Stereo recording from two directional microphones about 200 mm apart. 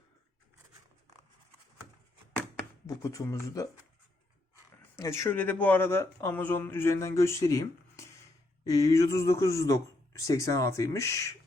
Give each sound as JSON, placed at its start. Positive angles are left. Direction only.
{"t": 2.8, "sound": "speech", "side_deg": 15}
{"t": 4.9, "sound": "speech", "side_deg": 15}